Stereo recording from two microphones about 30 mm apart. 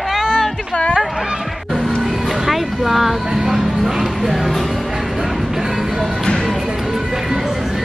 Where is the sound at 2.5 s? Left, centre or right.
Centre.